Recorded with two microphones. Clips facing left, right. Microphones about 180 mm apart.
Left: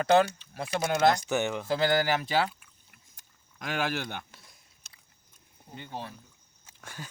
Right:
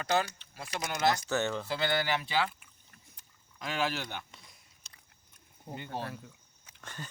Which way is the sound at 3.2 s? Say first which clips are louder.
Left 1 dB; 50° left (ahead or behind).